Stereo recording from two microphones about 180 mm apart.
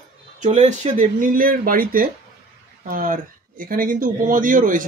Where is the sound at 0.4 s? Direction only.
45° right (ahead or behind).